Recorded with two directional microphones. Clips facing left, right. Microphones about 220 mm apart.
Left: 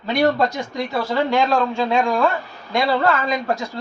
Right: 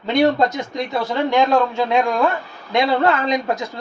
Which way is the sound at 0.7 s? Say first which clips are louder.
Left 1 dB; 20° right (ahead or behind).